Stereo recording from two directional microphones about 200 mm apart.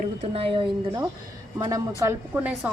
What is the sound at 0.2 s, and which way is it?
A woman's voice, 30° right (ahead or behind).